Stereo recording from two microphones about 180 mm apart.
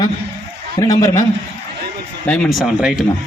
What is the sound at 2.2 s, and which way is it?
Speech, 5° left (ahead or behind).